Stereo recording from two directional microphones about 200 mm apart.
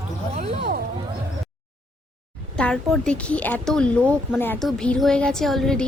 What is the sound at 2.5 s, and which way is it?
A woman's voice, 5° left (ahead or behind).